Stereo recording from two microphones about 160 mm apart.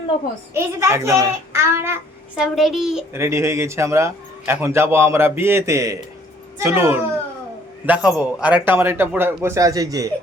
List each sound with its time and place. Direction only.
0.5 s a man's voice: 15° right (ahead or behind)
2.4 s a child's voice: centre (ahead or behind)
3.1 s a man's voice: 15° right (ahead or behind)